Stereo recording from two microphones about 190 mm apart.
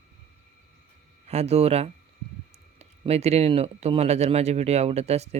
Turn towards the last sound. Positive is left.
turn(degrees=-35)  # may be behind; listen again after turning